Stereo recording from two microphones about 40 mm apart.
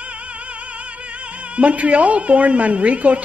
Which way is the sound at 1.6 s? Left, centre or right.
Right.